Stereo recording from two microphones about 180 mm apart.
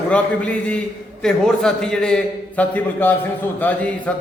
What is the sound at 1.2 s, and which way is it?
A man's voice, 5° left (ahead or behind).